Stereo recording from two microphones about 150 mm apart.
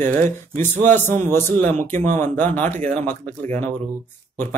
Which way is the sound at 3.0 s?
15° left (ahead or behind).